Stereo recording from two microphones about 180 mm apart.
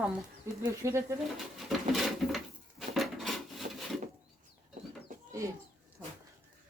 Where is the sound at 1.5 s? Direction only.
Centre (ahead or behind).